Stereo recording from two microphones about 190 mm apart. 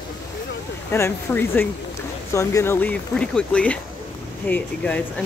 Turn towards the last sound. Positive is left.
turn(degrees=10)  # may be behind; listen again after turning